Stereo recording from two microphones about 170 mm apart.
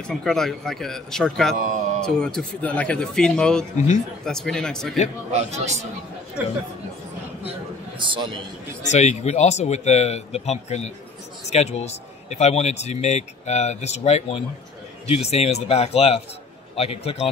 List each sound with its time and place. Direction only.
0.0 s speech: 5° left (ahead or behind)
3.7 s speech: 45° left (ahead or behind)
4.2 s speech: 5° left (ahead or behind)
5.3 s a man's voice: 40° right (ahead or behind)
8.0 s a man's voice: 30° right (ahead or behind)
8.9 s speech: 40° left (ahead or behind)